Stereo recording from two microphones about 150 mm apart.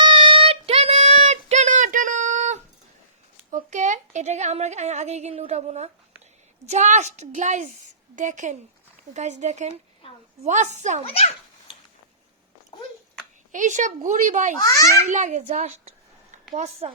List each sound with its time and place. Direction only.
0.0 s child singing: 35° right (ahead or behind); by 2.6 s 50° right (ahead or behind)
3.5 s a woman's voice: 55° right (ahead or behind)
11.1 s a child's voice: 45° left (ahead or behind)
13.5 s a woman's voice: 55° right (ahead or behind)
14.6 s a child's voice: 25° left (ahead or behind)
15.1 s a woman's voice: 55° right (ahead or behind)